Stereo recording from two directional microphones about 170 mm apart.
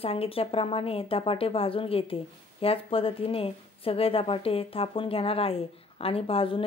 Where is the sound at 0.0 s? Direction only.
35° left (ahead or behind).